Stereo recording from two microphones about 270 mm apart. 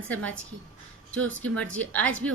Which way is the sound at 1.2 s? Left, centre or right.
Right.